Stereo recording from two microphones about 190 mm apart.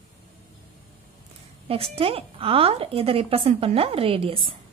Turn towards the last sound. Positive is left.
turn(degrees=-30)  # may be behind; listen again after turning